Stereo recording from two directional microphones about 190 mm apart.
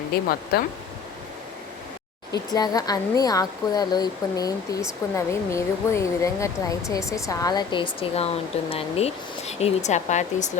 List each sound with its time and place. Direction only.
0.1 s speech: 50° left (ahead or behind)
2.5 s speech: 20° left (ahead or behind); by 10.6 s 40° left (ahead or behind)